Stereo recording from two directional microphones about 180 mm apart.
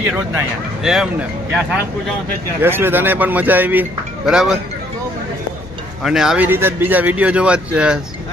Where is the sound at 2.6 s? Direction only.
10° right (ahead or behind).